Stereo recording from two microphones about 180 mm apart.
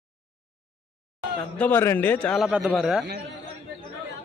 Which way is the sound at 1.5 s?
10° left (ahead or behind).